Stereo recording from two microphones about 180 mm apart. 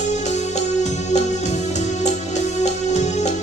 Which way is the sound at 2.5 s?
40° left (ahead or behind).